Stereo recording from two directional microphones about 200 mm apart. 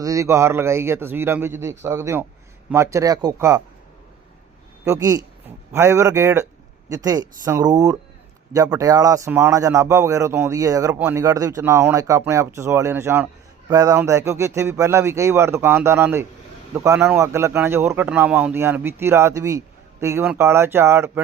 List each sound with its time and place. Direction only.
0.0 s speech: 15° right (ahead or behind)
4.9 s speech: 20° right (ahead or behind)